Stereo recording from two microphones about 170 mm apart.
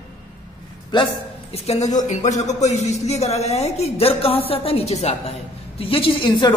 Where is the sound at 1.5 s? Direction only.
40° left (ahead or behind).